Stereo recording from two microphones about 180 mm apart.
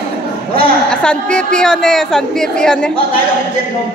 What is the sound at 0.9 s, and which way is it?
A woman's voice, 5° left (ahead or behind).